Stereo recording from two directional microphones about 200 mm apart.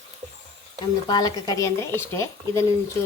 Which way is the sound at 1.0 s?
20° left (ahead or behind).